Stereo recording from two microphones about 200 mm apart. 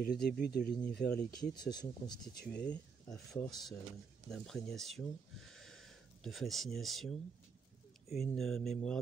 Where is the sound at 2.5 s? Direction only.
5° left (ahead or behind).